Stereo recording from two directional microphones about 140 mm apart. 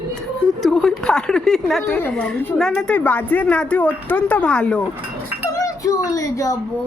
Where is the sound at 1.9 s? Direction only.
10° left (ahead or behind).